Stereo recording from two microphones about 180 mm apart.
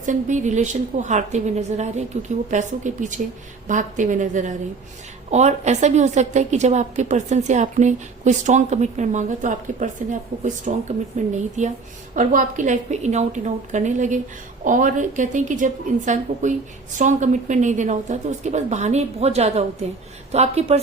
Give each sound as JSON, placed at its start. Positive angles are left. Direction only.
{"t": 0.0, "sound": "a woman's voice", "side_deg": -45}